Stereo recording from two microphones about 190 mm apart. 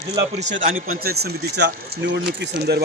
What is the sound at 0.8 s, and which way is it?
Speech, 55° right (ahead or behind).